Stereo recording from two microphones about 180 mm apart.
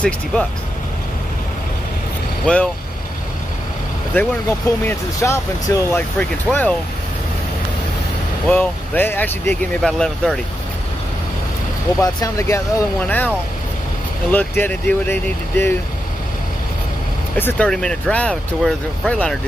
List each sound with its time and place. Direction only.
2.4 s speech: 5° left (ahead or behind)
4.1 s speech: 10° left (ahead or behind)
8.5 s speech: 10° left (ahead or behind)
12.0 s speech: 20° left (ahead or behind)
14.3 s speech: 10° left (ahead or behind)
17.4 s speech: 10° left (ahead or behind)